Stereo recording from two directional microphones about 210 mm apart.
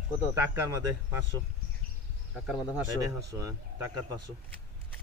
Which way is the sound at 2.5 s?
5° right (ahead or behind).